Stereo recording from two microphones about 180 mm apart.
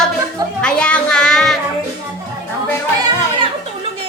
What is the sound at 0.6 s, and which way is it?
Child singing, 5° left (ahead or behind).